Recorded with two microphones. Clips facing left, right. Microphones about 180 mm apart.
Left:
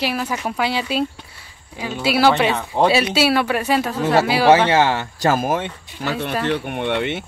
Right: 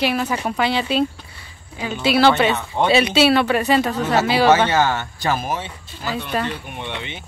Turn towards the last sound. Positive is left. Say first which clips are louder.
# left 9 dB
turn(degrees=65)  # may be behind; listen again after turning